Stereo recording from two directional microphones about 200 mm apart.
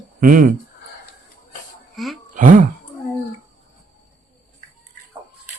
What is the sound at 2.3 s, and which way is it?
Speech, 40° right (ahead or behind).